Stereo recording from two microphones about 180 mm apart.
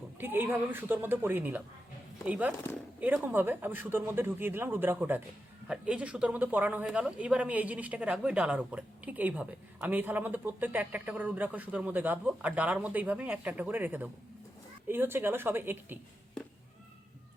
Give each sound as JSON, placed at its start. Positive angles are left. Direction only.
{"t": 0.2, "sound": "speech", "side_deg": -10}